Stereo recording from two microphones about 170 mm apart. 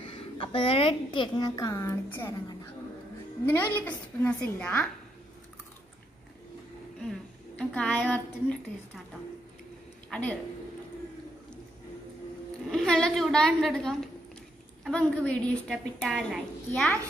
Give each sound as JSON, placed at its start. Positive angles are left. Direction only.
{"t": 0.1, "sound": "a woman's voice", "side_deg": 30}
{"t": 3.8, "sound": "a woman's voice", "side_deg": 5}
{"t": 7.0, "sound": "speech", "side_deg": 5}
{"t": 10.0, "sound": "a sound", "side_deg": 5}
{"t": 12.7, "sound": "a woman's voice", "side_deg": 5}